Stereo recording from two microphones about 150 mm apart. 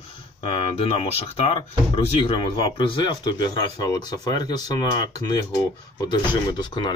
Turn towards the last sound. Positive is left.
turn(degrees=30)  # may be behind; listen again after turning